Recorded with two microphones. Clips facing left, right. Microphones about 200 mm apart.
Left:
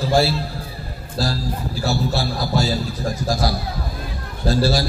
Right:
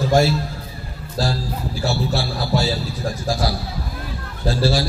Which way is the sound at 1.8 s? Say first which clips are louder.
Left 1 dB; 40° left (ahead or behind).